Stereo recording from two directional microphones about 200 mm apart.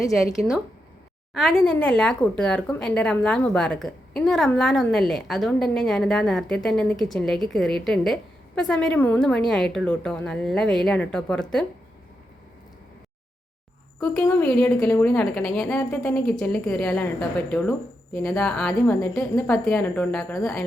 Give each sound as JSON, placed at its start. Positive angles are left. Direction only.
{"t": 1.3, "sound": "a woman's voice", "side_deg": 0}
{"t": 14.0, "sound": "a woman's voice", "side_deg": 10}